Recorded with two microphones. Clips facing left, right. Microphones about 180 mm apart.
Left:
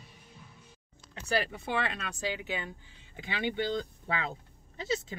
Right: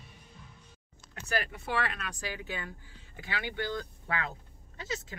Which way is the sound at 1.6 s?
20° left (ahead or behind).